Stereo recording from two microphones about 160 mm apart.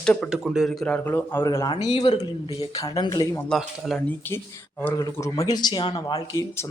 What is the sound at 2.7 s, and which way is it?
Speech, 20° left (ahead or behind).